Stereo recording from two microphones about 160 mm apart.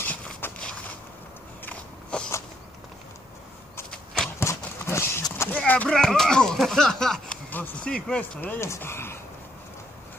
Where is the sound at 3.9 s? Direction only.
5° left (ahead or behind).